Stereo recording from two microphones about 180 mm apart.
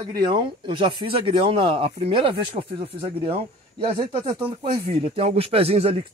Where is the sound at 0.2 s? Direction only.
25° right (ahead or behind).